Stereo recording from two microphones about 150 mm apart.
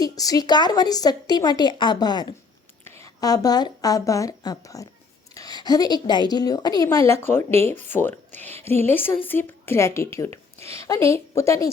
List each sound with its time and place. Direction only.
0.0 s a woman's voice: 25° left (ahead or behind)